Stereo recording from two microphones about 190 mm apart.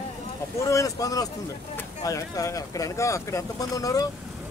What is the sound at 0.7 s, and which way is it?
Speech, 15° left (ahead or behind).